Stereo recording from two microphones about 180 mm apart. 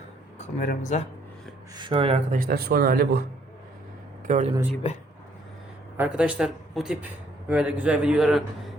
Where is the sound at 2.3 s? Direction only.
55° right (ahead or behind).